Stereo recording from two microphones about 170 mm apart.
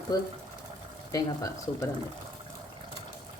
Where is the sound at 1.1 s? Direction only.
20° left (ahead or behind).